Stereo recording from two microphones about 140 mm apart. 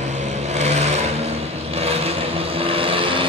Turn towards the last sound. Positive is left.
turn(degrees=-40)  # may be behind; listen again after turning